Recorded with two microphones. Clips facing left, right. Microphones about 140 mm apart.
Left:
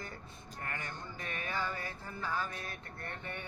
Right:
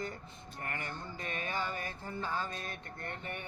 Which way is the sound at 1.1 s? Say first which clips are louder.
Right 1 dB; 20° right (ahead or behind).